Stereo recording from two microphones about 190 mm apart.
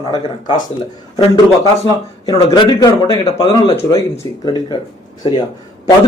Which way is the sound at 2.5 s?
20° left (ahead or behind).